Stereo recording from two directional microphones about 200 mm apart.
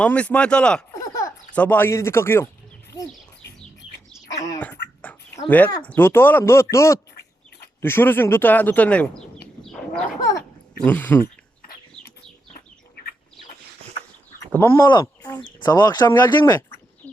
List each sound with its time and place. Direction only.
0.0 s speech: 5° left (ahead or behind)
0.9 s a sound: 15° left (ahead or behind)
1.5 s speech: 10° left (ahead or behind)
4.1 s a sound: 20° left (ahead or behind)
4.6 s dog: 10° left (ahead or behind)
5.8 s speech: 10° left (ahead or behind)
10.8 s speech: 10° left (ahead or behind)
14.3 s a sound: 10° left (ahead or behind)
14.8 s speech: 15° left (ahead or behind)